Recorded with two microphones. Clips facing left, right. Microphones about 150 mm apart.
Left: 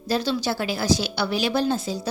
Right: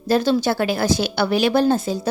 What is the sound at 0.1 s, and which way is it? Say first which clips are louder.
A woman's voice: right 6 dB; 50° right (ahead or behind).